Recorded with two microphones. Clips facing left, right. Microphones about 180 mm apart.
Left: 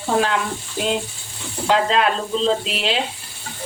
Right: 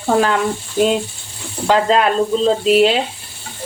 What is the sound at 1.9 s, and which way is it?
Speech, 45° right (ahead or behind).